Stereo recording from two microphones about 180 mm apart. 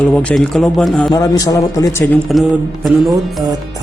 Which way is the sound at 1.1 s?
20° left (ahead or behind).